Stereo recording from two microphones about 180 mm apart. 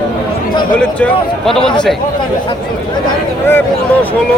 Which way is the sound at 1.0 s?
5° left (ahead or behind).